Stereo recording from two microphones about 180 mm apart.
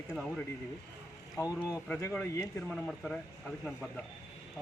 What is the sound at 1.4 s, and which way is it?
Speech, 15° left (ahead or behind).